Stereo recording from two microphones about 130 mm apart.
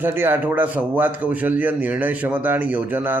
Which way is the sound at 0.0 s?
15° right (ahead or behind).